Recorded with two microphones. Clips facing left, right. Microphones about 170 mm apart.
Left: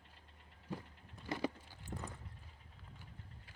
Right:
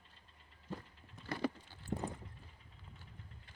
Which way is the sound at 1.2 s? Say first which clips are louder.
Right 1 dB; 15° left (ahead or behind).